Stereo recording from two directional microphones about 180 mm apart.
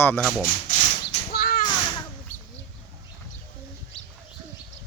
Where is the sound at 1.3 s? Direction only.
55° left (ahead or behind).